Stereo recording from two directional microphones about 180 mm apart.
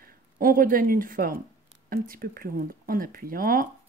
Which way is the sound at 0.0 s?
50° right (ahead or behind).